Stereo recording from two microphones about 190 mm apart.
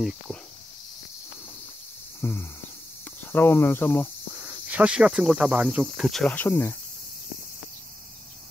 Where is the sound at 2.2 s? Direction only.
10° left (ahead or behind).